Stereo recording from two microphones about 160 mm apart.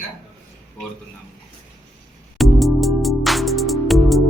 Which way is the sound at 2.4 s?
Centre (ahead or behind).